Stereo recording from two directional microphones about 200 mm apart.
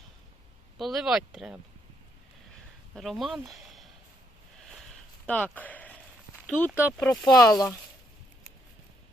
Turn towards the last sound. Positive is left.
turn(degrees=15)  # may be behind; listen again after turning